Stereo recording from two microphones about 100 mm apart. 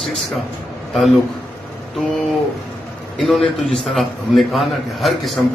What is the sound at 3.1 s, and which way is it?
A man's voice, centre (ahead or behind).